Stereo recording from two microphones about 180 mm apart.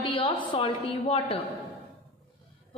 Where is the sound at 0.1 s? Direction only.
30° left (ahead or behind).